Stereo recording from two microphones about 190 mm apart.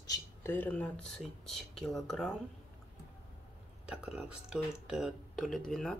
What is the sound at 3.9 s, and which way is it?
Speech, 5° right (ahead or behind).